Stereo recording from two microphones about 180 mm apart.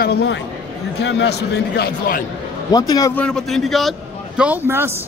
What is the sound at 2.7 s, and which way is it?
Speech, 20° left (ahead or behind).